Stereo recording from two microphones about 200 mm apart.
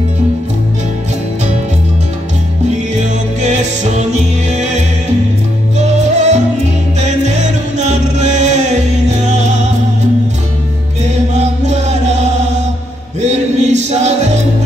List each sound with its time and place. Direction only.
3.3 s music: 35° right (ahead or behind)
11.3 s music: 35° right (ahead or behind)